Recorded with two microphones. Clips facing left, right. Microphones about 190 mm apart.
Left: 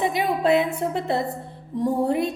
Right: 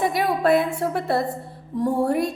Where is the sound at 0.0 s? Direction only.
20° left (ahead or behind).